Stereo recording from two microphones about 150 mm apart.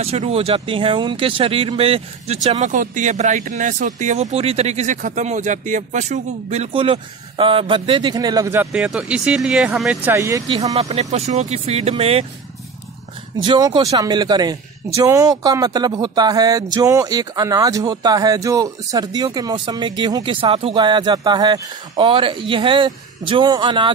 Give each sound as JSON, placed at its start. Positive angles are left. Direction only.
{"t": 0.0, "sound": "speech", "side_deg": -45}
{"t": 8.5, "sound": "speech", "side_deg": -10}
{"t": 10.5, "sound": "speech", "side_deg": -45}
{"t": 13.4, "sound": "speech", "side_deg": -25}